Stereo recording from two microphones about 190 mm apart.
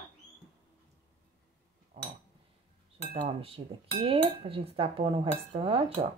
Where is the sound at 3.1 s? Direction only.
30° right (ahead or behind).